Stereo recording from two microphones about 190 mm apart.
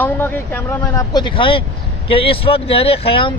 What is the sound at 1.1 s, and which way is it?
Speech, 25° left (ahead or behind).